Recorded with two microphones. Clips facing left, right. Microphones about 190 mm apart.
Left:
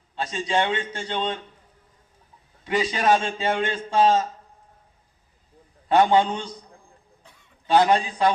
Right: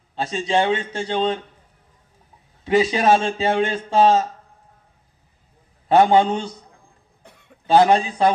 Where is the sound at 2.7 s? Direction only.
25° right (ahead or behind).